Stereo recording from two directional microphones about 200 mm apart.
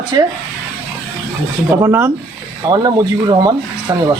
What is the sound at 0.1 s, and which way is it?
Speech, 20° right (ahead or behind).